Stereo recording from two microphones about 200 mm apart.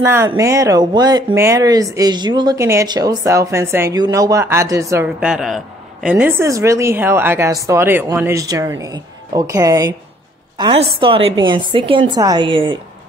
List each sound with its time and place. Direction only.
0.0 s speech: 10° right (ahead or behind)
5.2 s a man's voice: centre (ahead or behind); by 12.7 s 25° right (ahead or behind)